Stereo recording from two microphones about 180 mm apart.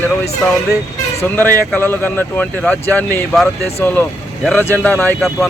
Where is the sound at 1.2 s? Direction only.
10° left (ahead or behind).